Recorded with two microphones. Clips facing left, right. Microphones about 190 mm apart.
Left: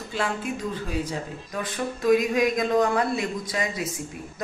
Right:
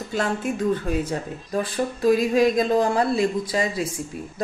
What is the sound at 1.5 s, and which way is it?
Speech, 30° right (ahead or behind).